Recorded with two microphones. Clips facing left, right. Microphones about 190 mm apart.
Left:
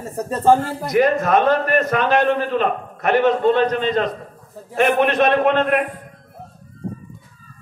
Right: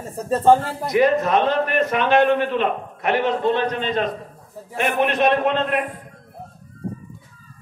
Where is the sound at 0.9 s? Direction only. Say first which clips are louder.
Left 1 dB; 50° left (ahead or behind).